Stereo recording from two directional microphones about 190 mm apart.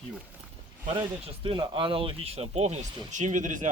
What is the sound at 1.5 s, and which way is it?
Speech, 25° right (ahead or behind).